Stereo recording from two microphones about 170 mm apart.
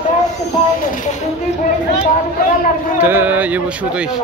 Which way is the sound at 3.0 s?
10° right (ahead or behind).